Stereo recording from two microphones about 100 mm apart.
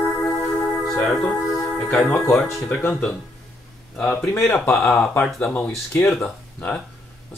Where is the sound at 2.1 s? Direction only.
15° left (ahead or behind).